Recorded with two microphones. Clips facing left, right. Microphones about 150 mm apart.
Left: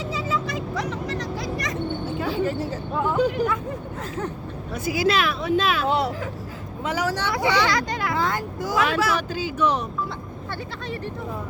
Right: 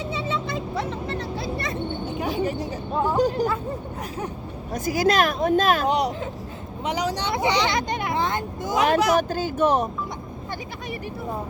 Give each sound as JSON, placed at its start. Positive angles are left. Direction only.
{"t": 0.1, "sound": "vehicle", "side_deg": -25}
{"t": 2.0, "sound": "a sound", "side_deg": -15}
{"t": 2.9, "sound": "a sound", "side_deg": -35}
{"t": 4.7, "sound": "speech", "side_deg": -45}
{"t": 5.9, "sound": "speech", "side_deg": -15}
{"t": 9.1, "sound": "speech", "side_deg": -45}